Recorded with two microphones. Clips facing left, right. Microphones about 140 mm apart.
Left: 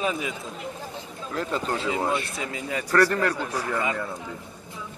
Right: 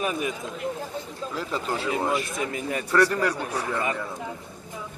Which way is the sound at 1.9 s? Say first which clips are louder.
Right 1 dB; 15° left (ahead or behind).